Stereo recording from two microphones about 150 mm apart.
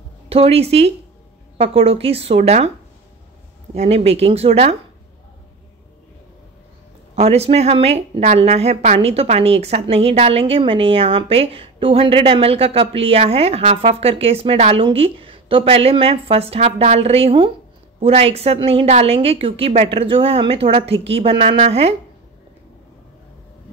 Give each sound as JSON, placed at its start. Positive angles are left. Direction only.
{"t": 0.3, "sound": "a woman's voice", "side_deg": -40}
{"t": 3.7, "sound": "speech", "side_deg": -45}
{"t": 7.2, "sound": "a woman's voice", "side_deg": -40}